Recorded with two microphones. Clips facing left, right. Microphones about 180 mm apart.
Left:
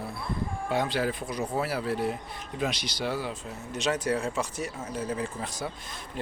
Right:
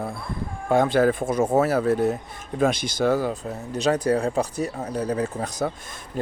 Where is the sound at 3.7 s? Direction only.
35° right (ahead or behind).